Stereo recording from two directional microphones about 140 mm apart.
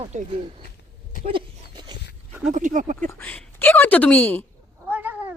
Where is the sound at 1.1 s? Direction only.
75° left (ahead or behind).